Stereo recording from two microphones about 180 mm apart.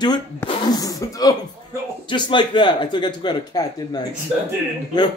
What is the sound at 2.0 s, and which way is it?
Speech, 25° left (ahead or behind).